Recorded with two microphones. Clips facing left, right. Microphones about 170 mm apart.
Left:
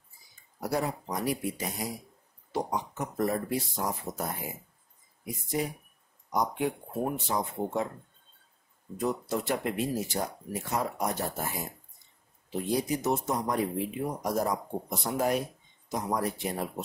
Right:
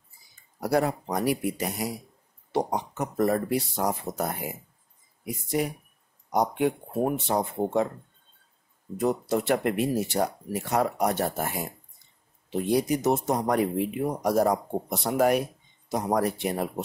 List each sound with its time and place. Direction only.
0.6 s speech: 70° right (ahead or behind)
7.2 s speech: 65° right (ahead or behind)
8.9 s speech: 65° right (ahead or behind)